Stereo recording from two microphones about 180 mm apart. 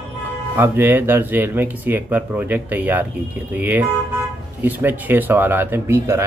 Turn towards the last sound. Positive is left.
turn(degrees=-15)  # may be behind; listen again after turning